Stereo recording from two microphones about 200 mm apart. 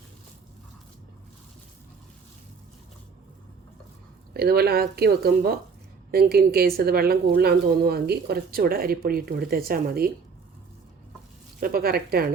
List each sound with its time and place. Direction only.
4.4 s a woman's voice: 50° right (ahead or behind)
11.6 s a woman's voice: 50° right (ahead or behind)